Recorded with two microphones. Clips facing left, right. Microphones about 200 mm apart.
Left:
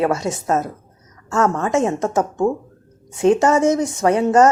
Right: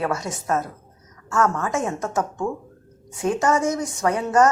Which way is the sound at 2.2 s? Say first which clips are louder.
Left 7 dB; 35° left (ahead or behind).